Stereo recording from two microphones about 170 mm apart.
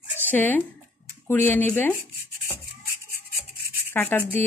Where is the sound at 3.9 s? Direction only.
10° left (ahead or behind).